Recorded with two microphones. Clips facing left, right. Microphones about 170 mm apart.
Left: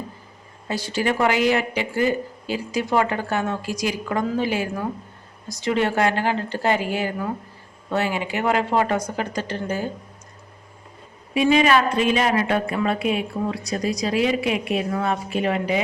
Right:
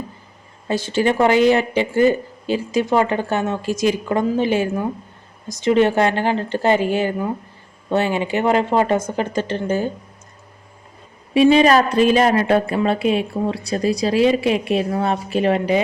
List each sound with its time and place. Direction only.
0.7 s speech: 25° right (ahead or behind)
11.3 s a woman's voice: 30° right (ahead or behind)